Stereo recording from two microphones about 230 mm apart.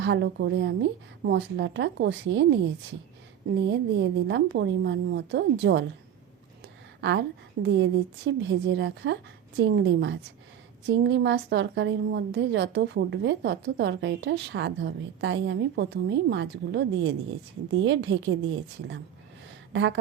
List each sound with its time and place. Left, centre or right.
0.0 s a woman's voice: right
3.7 s a woman's voice: right
7.0 s a woman's voice: right